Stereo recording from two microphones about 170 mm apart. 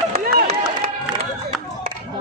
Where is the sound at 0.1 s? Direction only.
60° right (ahead or behind).